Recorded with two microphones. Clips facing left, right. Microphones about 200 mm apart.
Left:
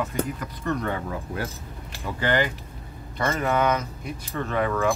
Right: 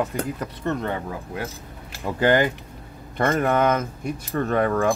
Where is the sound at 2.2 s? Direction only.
45° right (ahead or behind).